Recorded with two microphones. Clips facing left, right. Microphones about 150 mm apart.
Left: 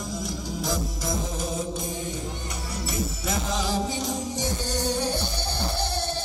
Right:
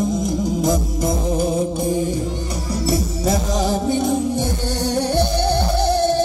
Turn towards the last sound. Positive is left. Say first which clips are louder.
# right 12 dB
turn(degrees=-65)  # may be behind; listen again after turning